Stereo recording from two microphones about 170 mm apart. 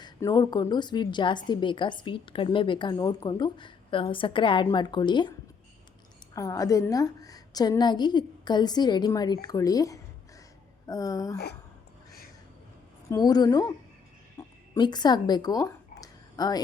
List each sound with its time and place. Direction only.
0.0 s a woman's voice: 20° left (ahead or behind)
6.3 s a woman's voice: 20° left (ahead or behind)
13.1 s a woman's voice: 25° left (ahead or behind)
14.3 s a sound: 25° left (ahead or behind)